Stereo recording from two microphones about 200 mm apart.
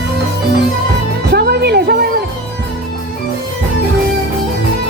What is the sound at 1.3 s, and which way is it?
Music, 50° right (ahead or behind).